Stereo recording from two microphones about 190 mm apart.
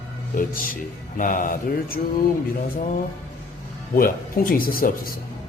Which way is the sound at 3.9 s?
50° left (ahead or behind).